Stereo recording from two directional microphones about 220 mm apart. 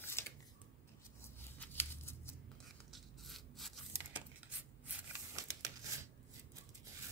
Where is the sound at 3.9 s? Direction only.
10° right (ahead or behind).